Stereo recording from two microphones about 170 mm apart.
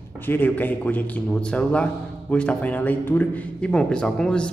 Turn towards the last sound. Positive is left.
turn(degrees=5)  # may be behind; listen again after turning